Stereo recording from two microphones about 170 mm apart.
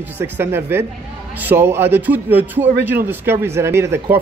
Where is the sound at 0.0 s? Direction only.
15° right (ahead or behind).